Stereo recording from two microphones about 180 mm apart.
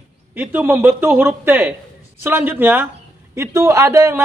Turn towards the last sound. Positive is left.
turn(degrees=-15)  # may be behind; listen again after turning